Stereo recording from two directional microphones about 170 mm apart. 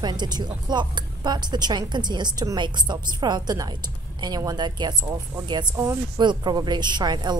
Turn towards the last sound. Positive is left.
turn(degrees=-25)  # may be behind; listen again after turning